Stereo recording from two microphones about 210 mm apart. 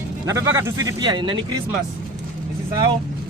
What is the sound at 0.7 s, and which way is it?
Speech, 20° right (ahead or behind).